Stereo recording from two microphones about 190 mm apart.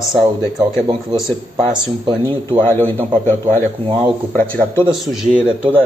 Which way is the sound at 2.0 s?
15° right (ahead or behind).